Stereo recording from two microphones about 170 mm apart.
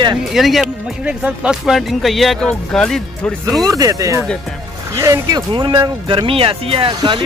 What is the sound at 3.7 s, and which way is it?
Speech, 20° right (ahead or behind).